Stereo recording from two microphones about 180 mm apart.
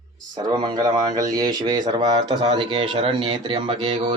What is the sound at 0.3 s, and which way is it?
A man's voice, 25° right (ahead or behind).